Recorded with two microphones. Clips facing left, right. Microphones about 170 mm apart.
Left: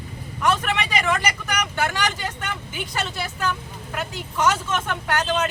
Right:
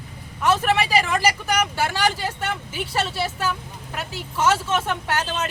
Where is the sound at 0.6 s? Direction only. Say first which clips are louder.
Right 3 dB; 30° right (ahead or behind).